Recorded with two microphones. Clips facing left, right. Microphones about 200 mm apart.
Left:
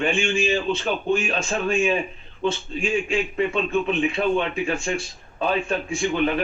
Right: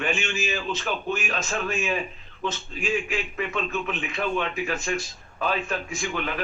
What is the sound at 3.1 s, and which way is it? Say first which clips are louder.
A man's voice: left 6 dB; 30° left (ahead or behind).